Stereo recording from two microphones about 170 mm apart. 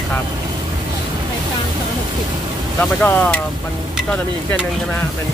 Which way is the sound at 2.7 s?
10° left (ahead or behind).